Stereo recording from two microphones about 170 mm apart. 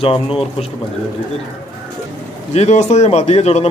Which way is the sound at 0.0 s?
35° left (ahead or behind).